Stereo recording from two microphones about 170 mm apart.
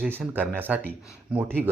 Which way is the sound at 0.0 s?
10° right (ahead or behind).